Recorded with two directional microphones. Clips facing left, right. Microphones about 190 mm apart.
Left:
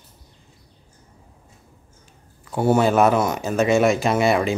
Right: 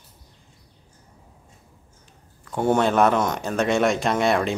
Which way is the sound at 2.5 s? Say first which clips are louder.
Left 2 dB; 5° left (ahead or behind).